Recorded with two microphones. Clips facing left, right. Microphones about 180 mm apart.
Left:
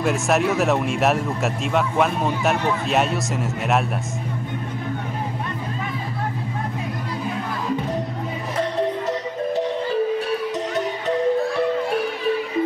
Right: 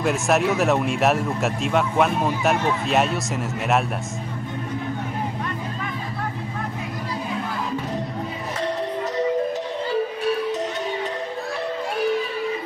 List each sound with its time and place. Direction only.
0.0 s speech: centre (ahead or behind)